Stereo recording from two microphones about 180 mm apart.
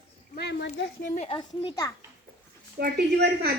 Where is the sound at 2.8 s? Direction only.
65° right (ahead or behind).